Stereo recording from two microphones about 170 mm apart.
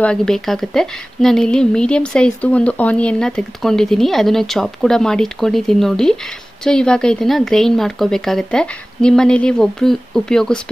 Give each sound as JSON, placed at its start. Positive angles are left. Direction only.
{"t": 0.0, "sound": "a woman's voice", "side_deg": 5}